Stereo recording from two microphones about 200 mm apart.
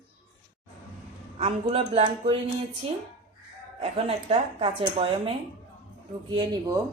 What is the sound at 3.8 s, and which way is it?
Speech, 30° right (ahead or behind).